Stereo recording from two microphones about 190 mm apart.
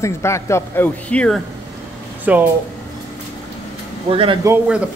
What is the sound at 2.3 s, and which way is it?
Speech, 5° right (ahead or behind).